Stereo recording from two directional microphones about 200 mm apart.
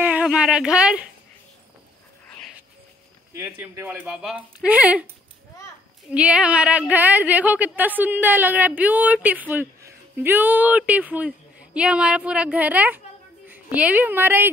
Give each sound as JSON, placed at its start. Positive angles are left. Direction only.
{"t": 0.0, "sound": "speech", "side_deg": -5}
{"t": 3.3, "sound": "speech", "side_deg": -10}
{"t": 6.0, "sound": "a woman's voice", "side_deg": -5}